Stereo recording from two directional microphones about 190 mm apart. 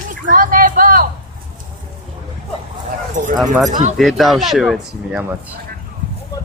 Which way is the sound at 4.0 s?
Centre (ahead or behind).